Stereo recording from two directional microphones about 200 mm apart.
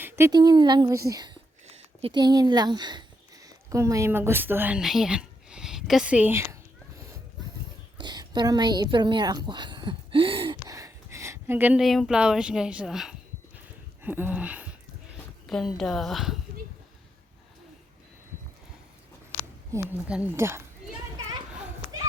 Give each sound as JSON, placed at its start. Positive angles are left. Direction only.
{"t": 0.0, "sound": "a woman's voice", "side_deg": -15}
{"t": 7.9, "sound": "a woman's voice", "side_deg": -20}
{"t": 19.7, "sound": "speech", "side_deg": -15}